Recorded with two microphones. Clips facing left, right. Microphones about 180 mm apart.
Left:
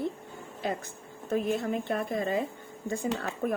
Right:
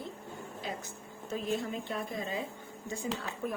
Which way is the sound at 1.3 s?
55° left (ahead or behind).